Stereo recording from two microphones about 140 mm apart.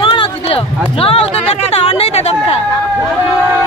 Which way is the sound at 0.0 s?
40° left (ahead or behind).